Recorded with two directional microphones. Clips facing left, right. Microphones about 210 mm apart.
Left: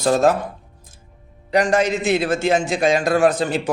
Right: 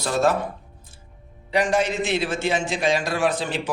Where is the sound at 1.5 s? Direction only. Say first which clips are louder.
Left 4 dB; 45° left (ahead or behind).